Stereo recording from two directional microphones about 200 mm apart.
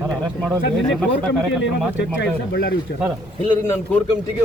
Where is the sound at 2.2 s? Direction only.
50° left (ahead or behind).